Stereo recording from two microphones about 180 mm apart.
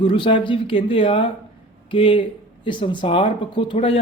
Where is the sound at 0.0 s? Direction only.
30° left (ahead or behind).